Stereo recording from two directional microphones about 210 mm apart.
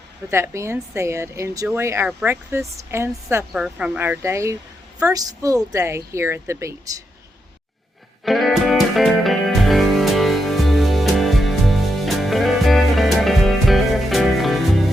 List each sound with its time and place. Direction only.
0.3 s a woman's voice: 10° right (ahead or behind)
8.2 s music: centre (ahead or behind)